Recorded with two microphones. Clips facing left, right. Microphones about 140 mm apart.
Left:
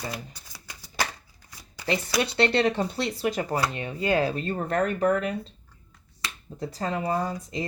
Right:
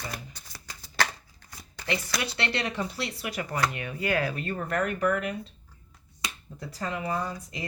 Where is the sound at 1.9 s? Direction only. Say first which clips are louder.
Left 5 dB; 30° left (ahead or behind).